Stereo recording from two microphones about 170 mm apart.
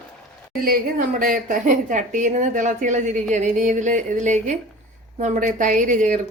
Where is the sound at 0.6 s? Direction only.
55° right (ahead or behind).